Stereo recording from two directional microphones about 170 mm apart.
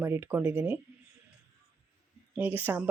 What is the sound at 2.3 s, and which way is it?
Speech, 10° right (ahead or behind).